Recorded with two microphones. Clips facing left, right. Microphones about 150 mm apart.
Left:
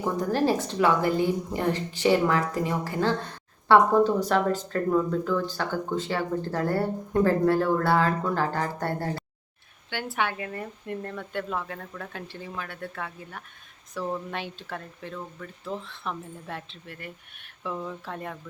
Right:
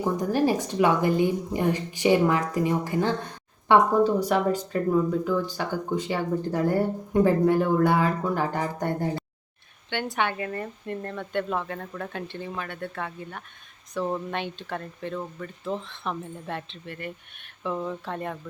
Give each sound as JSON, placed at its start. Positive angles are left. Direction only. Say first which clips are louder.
{"t": 0.0, "sound": "a woman's voice", "louder": "right 1 dB", "side_deg": -15}
{"t": 9.9, "sound": "speech", "louder": "right 2 dB", "side_deg": 5}
{"t": 15.7, "sound": "speech", "louder": "right 3 dB", "side_deg": -20}
{"t": 16.1, "sound": "speech", "louder": "right 3 dB", "side_deg": 0}